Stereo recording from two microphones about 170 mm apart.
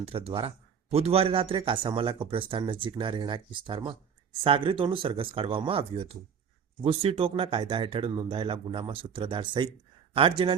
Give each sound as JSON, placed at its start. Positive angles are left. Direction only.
{"t": 0.0, "sound": "speech", "side_deg": -35}